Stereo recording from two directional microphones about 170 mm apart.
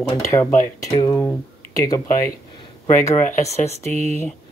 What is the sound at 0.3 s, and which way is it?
Speech, 15° left (ahead or behind).